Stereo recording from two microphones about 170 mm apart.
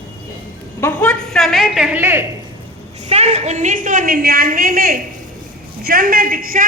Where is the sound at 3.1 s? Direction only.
40° right (ahead or behind); by 4.9 s 60° right (ahead or behind).